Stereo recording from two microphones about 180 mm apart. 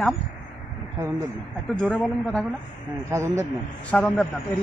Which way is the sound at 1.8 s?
5° left (ahead or behind).